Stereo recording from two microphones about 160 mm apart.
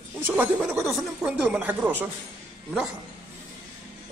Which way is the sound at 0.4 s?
5° right (ahead or behind).